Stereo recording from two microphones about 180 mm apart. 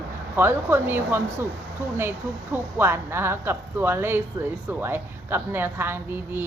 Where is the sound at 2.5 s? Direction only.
15° right (ahead or behind).